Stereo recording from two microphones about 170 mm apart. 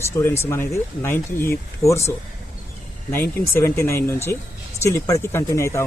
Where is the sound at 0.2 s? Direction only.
15° left (ahead or behind).